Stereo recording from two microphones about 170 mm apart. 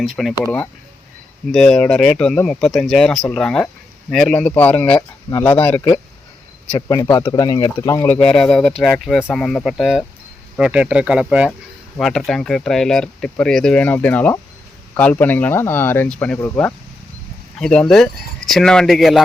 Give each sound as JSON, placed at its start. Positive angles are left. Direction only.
{"t": 0.2, "sound": "speech", "side_deg": 5}
{"t": 1.5, "sound": "speech", "side_deg": 5}
{"t": 4.9, "sound": "speech", "side_deg": 25}
{"t": 5.6, "sound": "speech", "side_deg": 10}
{"t": 6.7, "sound": "speech", "side_deg": 20}